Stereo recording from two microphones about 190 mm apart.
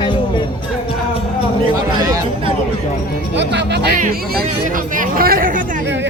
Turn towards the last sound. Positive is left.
turn(degrees=-50)  # may be behind; listen again after turning